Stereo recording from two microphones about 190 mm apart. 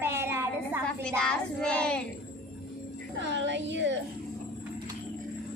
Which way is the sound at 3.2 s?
75° right (ahead or behind).